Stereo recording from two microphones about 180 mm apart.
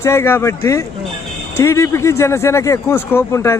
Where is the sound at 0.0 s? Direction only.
15° left (ahead or behind).